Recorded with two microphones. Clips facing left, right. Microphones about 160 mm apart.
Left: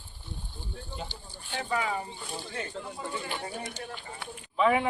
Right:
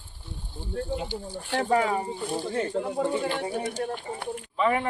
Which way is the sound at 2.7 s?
55° right (ahead or behind).